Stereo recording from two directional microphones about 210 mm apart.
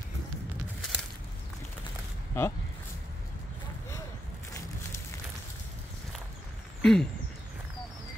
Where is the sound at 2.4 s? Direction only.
10° left (ahead or behind).